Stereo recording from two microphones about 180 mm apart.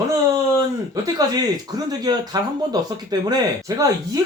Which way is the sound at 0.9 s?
20° right (ahead or behind).